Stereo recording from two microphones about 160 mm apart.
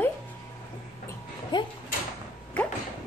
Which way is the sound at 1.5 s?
30° left (ahead or behind).